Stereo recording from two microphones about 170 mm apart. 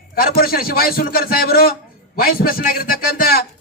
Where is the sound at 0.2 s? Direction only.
60° left (ahead or behind).